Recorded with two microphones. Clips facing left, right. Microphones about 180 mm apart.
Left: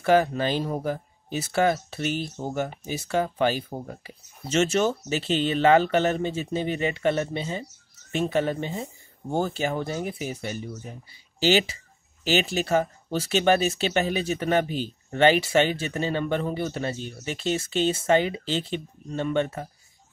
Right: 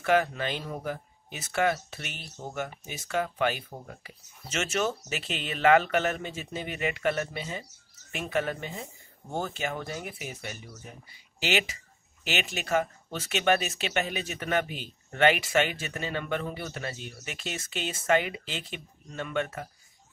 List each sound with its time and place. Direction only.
0.0 s speech: 35° left (ahead or behind)